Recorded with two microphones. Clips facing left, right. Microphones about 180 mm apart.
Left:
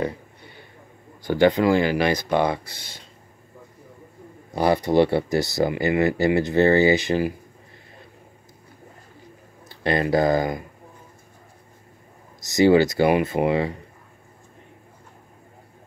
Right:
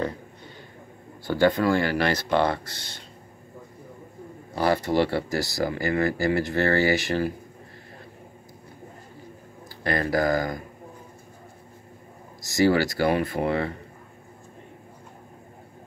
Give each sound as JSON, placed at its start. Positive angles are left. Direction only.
{"t": 1.2, "sound": "speech", "side_deg": 15}
{"t": 4.6, "sound": "speech", "side_deg": 15}
{"t": 9.7, "sound": "speech", "side_deg": 20}
{"t": 12.4, "sound": "speech", "side_deg": 20}